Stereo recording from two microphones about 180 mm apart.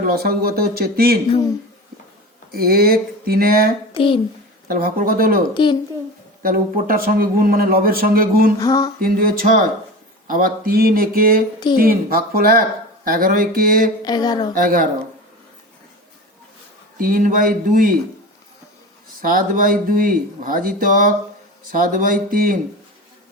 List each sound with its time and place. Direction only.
0.0 s speech: 55° right (ahead or behind)
2.5 s speech: 55° right (ahead or behind)
3.9 s a child's voice: 30° left (ahead or behind)
4.7 s a man's voice: 55° right (ahead or behind)
5.6 s a sound: 25° left (ahead or behind)
6.4 s a man's voice: 50° right (ahead or behind)
8.5 s a sound: 20° left (ahead or behind)
9.0 s a man's voice: 55° right (ahead or behind)
14.0 s a sound: 20° left (ahead or behind)
14.5 s a man's voice: 50° right (ahead or behind)
17.0 s a man's voice: 50° right (ahead or behind)
19.2 s a man's voice: 50° right (ahead or behind)